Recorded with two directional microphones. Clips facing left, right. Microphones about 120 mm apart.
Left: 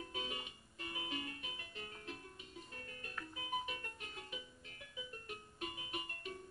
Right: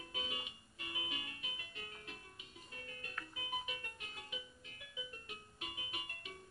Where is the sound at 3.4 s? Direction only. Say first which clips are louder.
Left 3 dB; 40° left (ahead or behind).